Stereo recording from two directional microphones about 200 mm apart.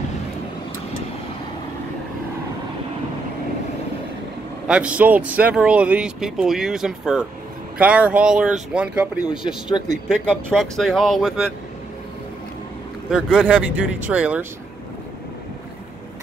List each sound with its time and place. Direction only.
4.6 s speech: 5° right (ahead or behind)
9.7 s speech: 20° left (ahead or behind)
10.3 s speech: centre (ahead or behind)
13.1 s speech: 5° right (ahead or behind)